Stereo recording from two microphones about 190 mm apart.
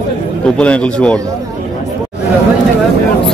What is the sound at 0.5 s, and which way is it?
Speech, 5° left (ahead or behind).